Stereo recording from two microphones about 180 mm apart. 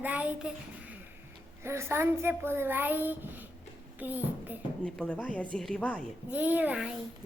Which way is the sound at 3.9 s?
10° right (ahead or behind).